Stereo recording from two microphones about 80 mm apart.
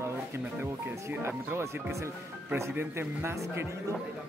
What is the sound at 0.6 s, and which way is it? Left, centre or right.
Speech, right.